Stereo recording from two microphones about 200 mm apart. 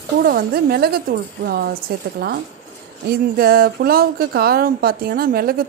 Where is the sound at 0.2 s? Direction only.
50° right (ahead or behind).